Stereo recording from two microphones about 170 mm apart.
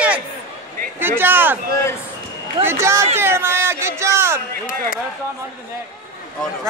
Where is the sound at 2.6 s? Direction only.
15° right (ahead or behind).